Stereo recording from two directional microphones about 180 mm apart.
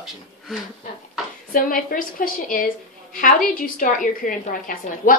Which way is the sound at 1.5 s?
50° left (ahead or behind).